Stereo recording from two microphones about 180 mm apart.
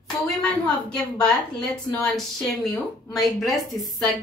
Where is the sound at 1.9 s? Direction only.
5° left (ahead or behind).